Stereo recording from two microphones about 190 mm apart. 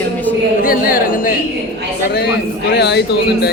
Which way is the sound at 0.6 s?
50° left (ahead or behind).